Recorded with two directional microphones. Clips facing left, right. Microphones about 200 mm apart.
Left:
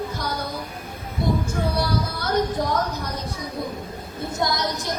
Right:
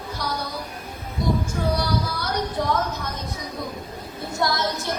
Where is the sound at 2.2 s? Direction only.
45° left (ahead or behind).